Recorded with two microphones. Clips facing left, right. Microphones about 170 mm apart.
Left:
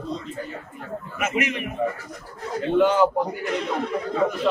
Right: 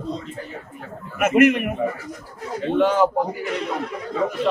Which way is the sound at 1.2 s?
55° right (ahead or behind).